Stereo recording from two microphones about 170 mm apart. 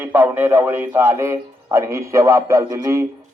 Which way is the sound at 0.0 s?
10° right (ahead or behind).